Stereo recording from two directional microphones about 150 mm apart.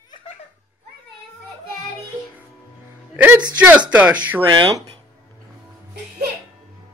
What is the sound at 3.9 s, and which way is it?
Speech, 10° right (ahead or behind).